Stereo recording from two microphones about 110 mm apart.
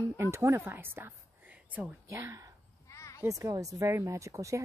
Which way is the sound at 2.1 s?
25° right (ahead or behind).